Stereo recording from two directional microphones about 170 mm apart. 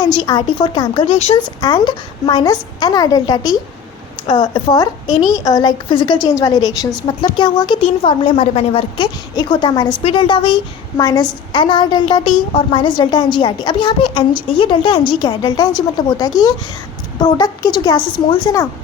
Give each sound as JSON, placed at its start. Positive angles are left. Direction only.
{"t": 0.0, "sound": "a woman's voice", "side_deg": 25}